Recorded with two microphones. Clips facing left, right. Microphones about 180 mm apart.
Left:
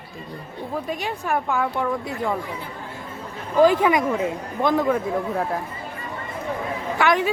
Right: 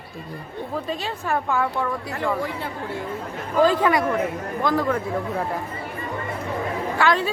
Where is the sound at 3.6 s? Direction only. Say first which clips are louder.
Left 2 dB; 15° left (ahead or behind).